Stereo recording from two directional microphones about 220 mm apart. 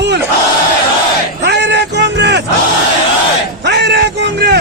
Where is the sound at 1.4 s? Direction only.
50° right (ahead or behind).